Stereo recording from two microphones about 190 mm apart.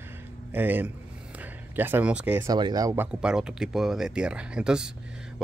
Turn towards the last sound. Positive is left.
turn(degrees=-5)  # may be behind; listen again after turning